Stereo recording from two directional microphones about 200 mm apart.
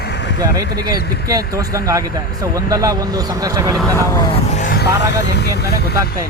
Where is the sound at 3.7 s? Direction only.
Centre (ahead or behind).